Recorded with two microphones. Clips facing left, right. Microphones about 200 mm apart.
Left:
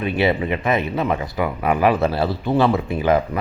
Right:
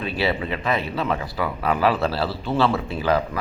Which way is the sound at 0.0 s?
20° left (ahead or behind).